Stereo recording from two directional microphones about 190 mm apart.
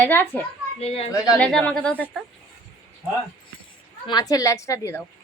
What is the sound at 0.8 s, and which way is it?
Speech, 30° left (ahead or behind).